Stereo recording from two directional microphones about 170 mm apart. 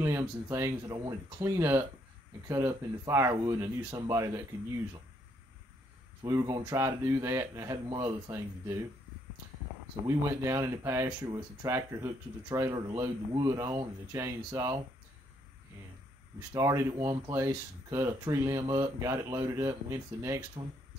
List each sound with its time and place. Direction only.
0.0 s speech: 15° right (ahead or behind)
6.2 s speech: 20° right (ahead or behind)
10.0 s speech: 15° right (ahead or behind)
16.5 s speech: 20° right (ahead or behind)